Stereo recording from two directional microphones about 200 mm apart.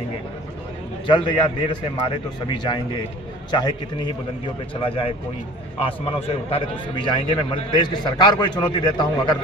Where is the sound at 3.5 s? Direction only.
20° left (ahead or behind).